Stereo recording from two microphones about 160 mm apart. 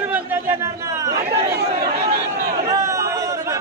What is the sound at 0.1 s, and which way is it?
Chatter, 15° right (ahead or behind).